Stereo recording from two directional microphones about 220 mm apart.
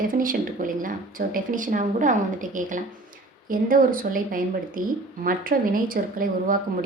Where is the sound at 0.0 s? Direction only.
40° right (ahead or behind).